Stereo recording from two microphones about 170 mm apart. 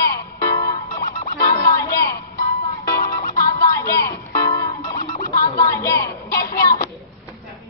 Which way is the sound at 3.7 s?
20° left (ahead or behind).